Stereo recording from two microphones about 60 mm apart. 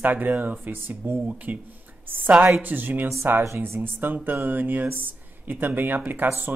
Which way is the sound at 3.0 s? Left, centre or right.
Right.